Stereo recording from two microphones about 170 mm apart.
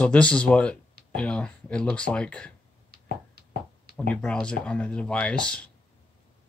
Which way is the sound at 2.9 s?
60° right (ahead or behind).